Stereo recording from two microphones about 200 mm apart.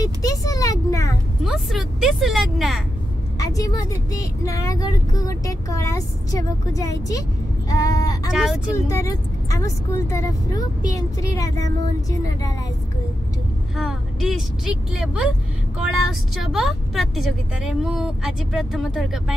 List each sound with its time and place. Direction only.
0.0 s speech: 15° left (ahead or behind)
1.4 s speech: centre (ahead or behind)
3.3 s speech: 15° left (ahead or behind)
8.3 s speech: 5° right (ahead or behind)
8.7 s speech: 15° left (ahead or behind)
13.7 s speech: centre (ahead or behind)